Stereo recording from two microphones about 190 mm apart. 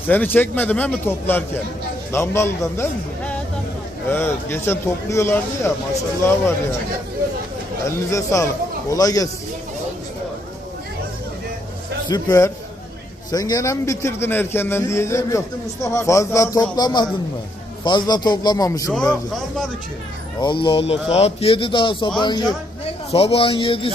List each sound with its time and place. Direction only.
0.1 s a man's voice: 10° left (ahead or behind)
4.1 s a man's voice: 10° left (ahead or behind)
7.9 s a man's voice: 15° left (ahead or behind)
12.0 s a man's voice: 20° left (ahead or behind)
20.4 s a man's voice: 25° left (ahead or behind)